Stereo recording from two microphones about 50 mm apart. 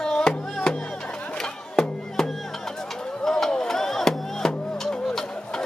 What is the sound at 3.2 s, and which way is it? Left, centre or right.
Music, centre.